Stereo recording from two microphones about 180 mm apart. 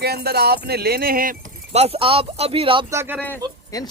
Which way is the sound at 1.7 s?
35° right (ahead or behind).